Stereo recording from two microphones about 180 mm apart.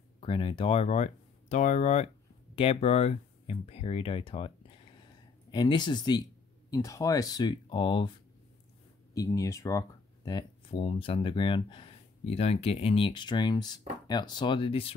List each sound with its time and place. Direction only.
0.2 s speech: 30° left (ahead or behind)
9.1 s speech: 20° left (ahead or behind)